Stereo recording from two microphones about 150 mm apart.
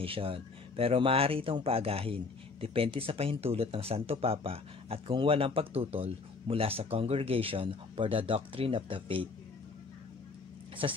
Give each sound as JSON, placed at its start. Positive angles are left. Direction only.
{"t": 0.0, "sound": "speech", "side_deg": -35}